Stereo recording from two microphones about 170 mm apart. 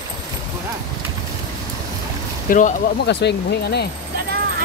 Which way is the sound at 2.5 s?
55° left (ahead or behind).